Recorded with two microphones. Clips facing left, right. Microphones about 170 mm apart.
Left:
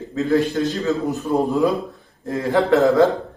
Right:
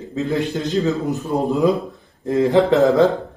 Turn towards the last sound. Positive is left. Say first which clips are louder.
# right 1 dB
turn(degrees=-20)  # may be behind; listen again after turning